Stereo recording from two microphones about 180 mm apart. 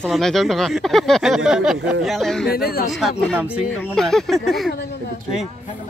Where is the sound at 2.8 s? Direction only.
Centre (ahead or behind).